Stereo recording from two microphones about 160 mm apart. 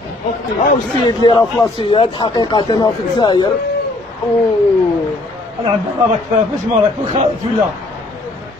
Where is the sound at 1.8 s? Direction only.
35° left (ahead or behind).